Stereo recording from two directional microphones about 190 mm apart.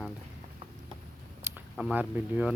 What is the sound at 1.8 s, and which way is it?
Speech, 5° right (ahead or behind).